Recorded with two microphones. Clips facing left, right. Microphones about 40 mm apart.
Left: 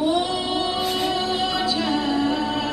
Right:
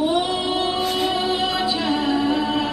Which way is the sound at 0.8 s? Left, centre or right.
Centre.